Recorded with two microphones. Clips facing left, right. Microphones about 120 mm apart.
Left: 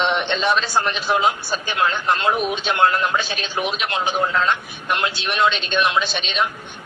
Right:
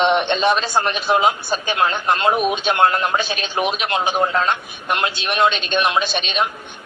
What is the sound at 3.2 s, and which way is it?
Speech, 55° right (ahead or behind).